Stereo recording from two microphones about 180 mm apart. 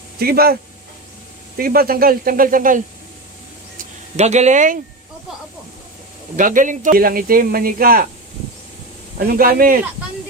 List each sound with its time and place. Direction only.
0.2 s speech: 60° right (ahead or behind)
1.5 s speech: 55° right (ahead or behind)
4.2 s speech: 40° right (ahead or behind)
6.3 s speech: 45° right (ahead or behind)
9.1 s speech: 55° right (ahead or behind)